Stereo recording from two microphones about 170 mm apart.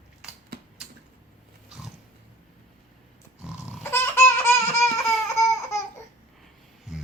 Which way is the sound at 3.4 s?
5° right (ahead or behind).